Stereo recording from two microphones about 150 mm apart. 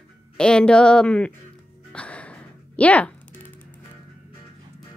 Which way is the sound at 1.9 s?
10° left (ahead or behind).